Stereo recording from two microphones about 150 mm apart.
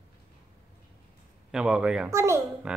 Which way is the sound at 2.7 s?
5° right (ahead or behind).